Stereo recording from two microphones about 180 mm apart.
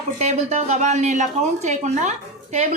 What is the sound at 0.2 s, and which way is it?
Speech, 40° right (ahead or behind).